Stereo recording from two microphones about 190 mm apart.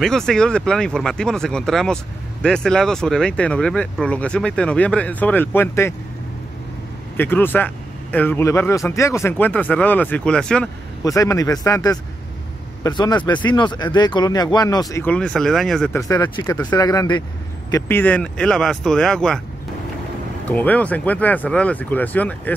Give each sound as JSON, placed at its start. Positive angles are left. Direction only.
{"t": 0.0, "sound": "speech", "side_deg": 5}
{"t": 7.2, "sound": "speech", "side_deg": 10}
{"t": 11.1, "sound": "speech", "side_deg": 15}
{"t": 16.0, "sound": "speech", "side_deg": 20}
{"t": 20.4, "sound": "speech", "side_deg": 10}